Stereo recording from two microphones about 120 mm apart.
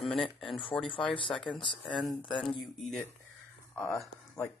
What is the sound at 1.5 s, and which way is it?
Speech, 45° left (ahead or behind).